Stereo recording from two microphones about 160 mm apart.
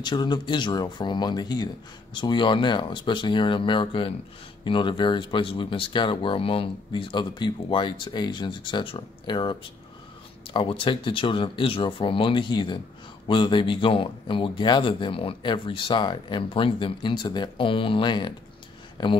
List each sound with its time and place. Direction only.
0.0 s speech: 25° left (ahead or behind)